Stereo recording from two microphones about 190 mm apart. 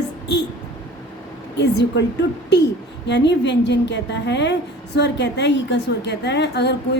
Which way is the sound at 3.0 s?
65° left (ahead or behind).